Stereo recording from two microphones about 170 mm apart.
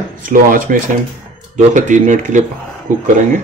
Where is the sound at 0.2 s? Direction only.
55° right (ahead or behind).